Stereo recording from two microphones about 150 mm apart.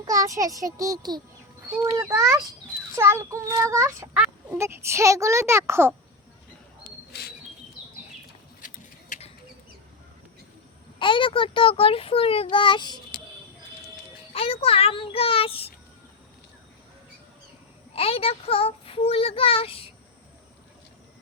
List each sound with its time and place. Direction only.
0.0 s a child's voice: 20° right (ahead or behind)
4.1 s a sound: 5° right (ahead or behind)
4.5 s a child's voice: 20° right (ahead or behind)
7.1 s insect: 90° left
8.6 s a sound: 50° left (ahead or behind)
11.0 s a child's voice: 35° left (ahead or behind)
14.3 s a child's voice: 40° left (ahead or behind)
17.9 s a child's voice: 40° left (ahead or behind)